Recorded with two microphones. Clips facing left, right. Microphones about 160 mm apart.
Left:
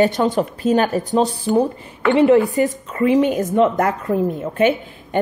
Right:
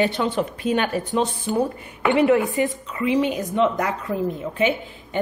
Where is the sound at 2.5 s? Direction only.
45° left (ahead or behind).